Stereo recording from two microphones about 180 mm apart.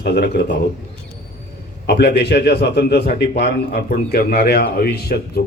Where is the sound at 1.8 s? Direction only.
70° left (ahead or behind).